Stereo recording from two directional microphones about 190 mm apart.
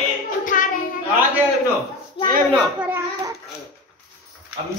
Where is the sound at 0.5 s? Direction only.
45° left (ahead or behind).